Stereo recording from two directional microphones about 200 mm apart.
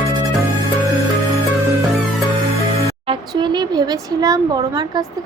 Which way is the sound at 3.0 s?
25° right (ahead or behind).